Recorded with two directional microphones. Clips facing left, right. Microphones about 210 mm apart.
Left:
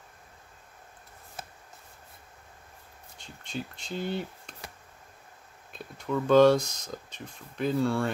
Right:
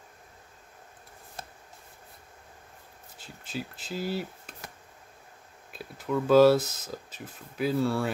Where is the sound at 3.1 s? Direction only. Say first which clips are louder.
Even; 5° right (ahead or behind).